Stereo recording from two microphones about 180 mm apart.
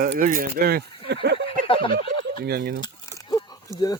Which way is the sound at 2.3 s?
60° right (ahead or behind).